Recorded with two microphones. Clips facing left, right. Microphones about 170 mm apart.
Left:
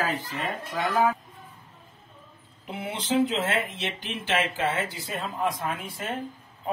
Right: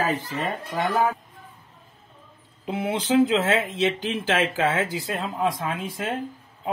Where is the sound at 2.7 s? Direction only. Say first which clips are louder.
Right 5 dB; 90° right.